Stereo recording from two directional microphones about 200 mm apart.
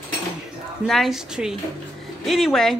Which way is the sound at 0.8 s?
Centre (ahead or behind).